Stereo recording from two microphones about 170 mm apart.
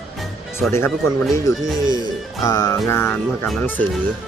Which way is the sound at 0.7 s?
15° left (ahead or behind).